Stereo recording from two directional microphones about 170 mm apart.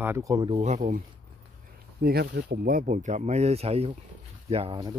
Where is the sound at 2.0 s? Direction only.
70° right (ahead or behind); by 4.8 s 35° right (ahead or behind).